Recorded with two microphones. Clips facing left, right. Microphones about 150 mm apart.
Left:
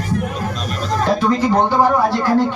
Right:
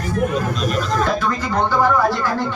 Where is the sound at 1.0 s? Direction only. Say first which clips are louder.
Left 5 dB; 30° left (ahead or behind).